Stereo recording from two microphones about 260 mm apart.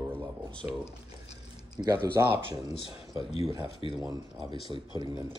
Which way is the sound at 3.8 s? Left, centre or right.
Left.